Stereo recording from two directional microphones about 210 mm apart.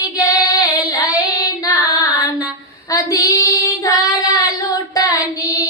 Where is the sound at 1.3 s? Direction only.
15° left (ahead or behind).